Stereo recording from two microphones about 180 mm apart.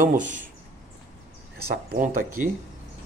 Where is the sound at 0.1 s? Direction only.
45° right (ahead or behind).